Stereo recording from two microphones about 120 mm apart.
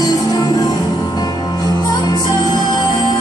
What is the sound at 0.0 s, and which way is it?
Music, 35° left (ahead or behind).